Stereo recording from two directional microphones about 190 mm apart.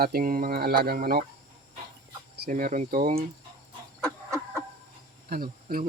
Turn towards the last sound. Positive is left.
turn(degrees=-50)  # may be behind; listen again after turning